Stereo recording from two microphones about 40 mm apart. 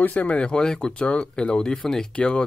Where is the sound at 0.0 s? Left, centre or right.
Left.